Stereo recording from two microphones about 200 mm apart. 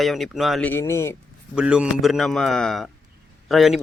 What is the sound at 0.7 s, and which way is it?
Speech, 15° left (ahead or behind).